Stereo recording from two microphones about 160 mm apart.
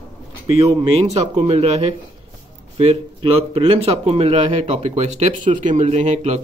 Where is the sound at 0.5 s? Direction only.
40° right (ahead or behind).